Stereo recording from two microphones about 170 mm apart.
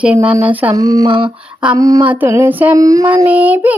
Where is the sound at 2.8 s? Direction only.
20° right (ahead or behind).